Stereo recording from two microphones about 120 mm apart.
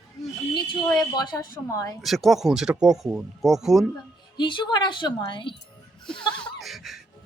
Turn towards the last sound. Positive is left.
turn(degrees=0)  # may be behind; listen again after turning